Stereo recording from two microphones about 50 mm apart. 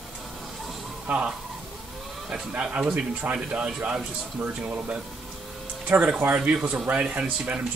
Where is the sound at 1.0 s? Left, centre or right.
Right.